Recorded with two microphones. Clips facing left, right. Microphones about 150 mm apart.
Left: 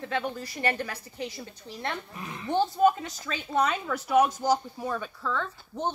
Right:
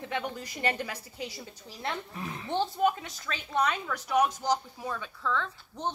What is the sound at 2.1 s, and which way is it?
Speech, 35° right (ahead or behind).